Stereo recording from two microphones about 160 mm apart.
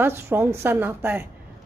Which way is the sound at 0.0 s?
15° right (ahead or behind).